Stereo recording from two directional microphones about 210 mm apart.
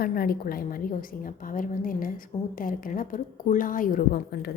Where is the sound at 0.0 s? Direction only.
45° left (ahead or behind).